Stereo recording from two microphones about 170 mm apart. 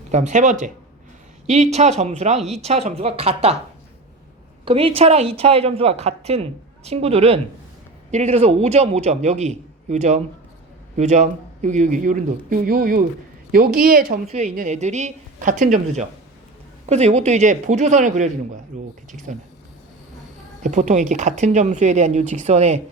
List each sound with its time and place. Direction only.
0.1 s speech: 45° right (ahead or behind)
4.6 s speech: 35° right (ahead or behind); by 14.2 s 60° right (ahead or behind)
14.3 s speech: 40° right (ahead or behind)
20.7 s speech: 45° right (ahead or behind)